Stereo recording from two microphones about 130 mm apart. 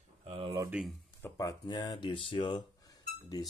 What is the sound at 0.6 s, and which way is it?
Speech, 5° right (ahead or behind).